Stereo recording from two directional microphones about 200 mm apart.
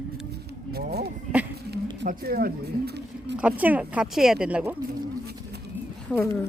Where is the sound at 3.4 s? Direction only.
5° right (ahead or behind).